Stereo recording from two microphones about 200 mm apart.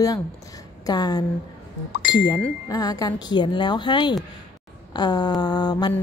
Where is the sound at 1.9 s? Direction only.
55° left (ahead or behind).